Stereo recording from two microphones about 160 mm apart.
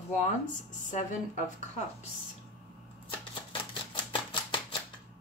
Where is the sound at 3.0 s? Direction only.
30° left (ahead or behind).